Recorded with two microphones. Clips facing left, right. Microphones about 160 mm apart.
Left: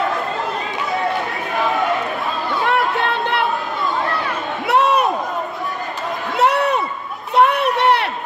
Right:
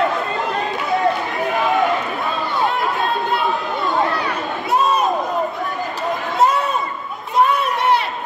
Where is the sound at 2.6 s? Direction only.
65° left (ahead or behind).